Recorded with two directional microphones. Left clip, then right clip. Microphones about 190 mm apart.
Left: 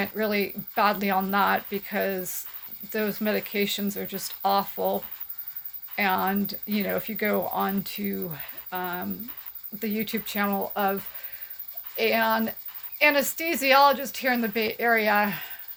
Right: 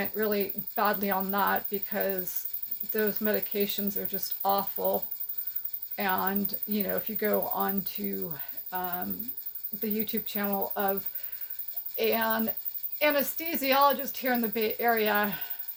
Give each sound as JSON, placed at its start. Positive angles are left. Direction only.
{"t": 0.0, "sound": "speech", "side_deg": 35}
{"t": 6.0, "sound": "speech", "side_deg": 35}
{"t": 11.9, "sound": "speech", "side_deg": 30}